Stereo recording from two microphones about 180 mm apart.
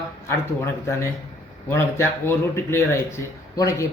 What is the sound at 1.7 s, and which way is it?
A man's voice, 15° left (ahead or behind).